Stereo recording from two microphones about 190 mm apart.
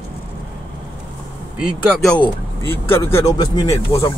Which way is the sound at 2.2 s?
15° left (ahead or behind).